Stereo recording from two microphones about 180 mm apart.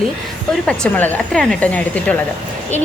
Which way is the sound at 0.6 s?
5° left (ahead or behind).